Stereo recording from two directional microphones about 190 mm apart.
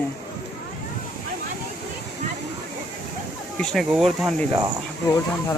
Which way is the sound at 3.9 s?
Centre (ahead or behind).